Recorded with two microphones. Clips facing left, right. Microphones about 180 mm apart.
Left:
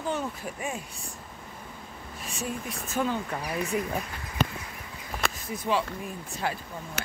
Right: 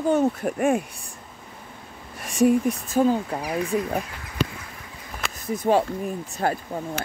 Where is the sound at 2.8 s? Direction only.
35° right (ahead or behind).